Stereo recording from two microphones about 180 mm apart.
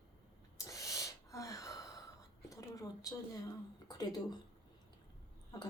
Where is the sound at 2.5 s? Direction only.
20° left (ahead or behind).